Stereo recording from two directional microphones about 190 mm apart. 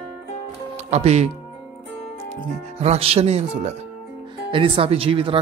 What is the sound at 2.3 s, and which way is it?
Speech, 35° right (ahead or behind).